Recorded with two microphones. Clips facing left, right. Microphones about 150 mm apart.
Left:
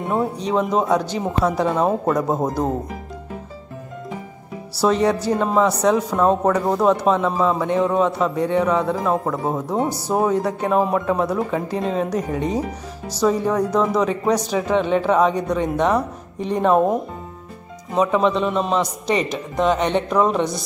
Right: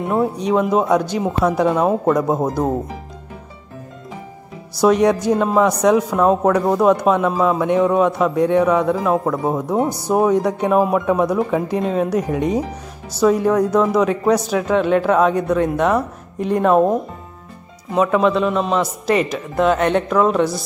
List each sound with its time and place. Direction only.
0.4 s speech: 10° right (ahead or behind)
4.7 s a man's voice: 15° right (ahead or behind)
9.4 s a man's voice: 15° right (ahead or behind)
18.1 s a man's voice: centre (ahead or behind)